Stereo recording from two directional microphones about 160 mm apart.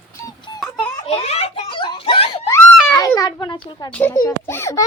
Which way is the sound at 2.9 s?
20° left (ahead or behind).